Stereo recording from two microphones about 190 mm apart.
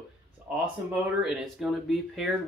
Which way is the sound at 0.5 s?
5° right (ahead or behind).